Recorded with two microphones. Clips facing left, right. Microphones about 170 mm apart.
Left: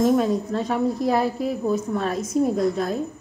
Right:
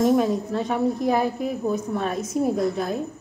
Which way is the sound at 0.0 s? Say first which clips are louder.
Even; centre (ahead or behind).